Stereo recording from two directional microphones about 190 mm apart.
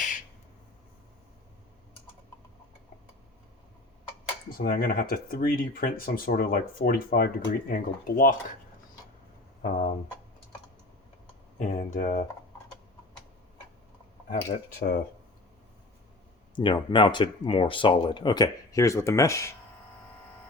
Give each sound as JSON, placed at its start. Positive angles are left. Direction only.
{"t": 4.4, "sound": "speech", "side_deg": 50}
{"t": 9.6, "sound": "a sound", "side_deg": 40}
{"t": 11.7, "sound": "speech", "side_deg": 45}
{"t": 14.3, "sound": "speech", "side_deg": 45}
{"t": 16.6, "sound": "speech", "side_deg": 25}